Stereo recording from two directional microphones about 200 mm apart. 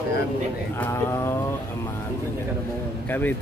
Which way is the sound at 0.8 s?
10° left (ahead or behind).